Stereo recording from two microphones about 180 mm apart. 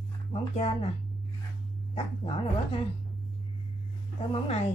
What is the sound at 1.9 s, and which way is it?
Speech, 30° left (ahead or behind).